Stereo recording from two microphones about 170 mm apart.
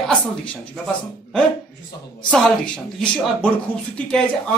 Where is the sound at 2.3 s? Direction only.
5° left (ahead or behind).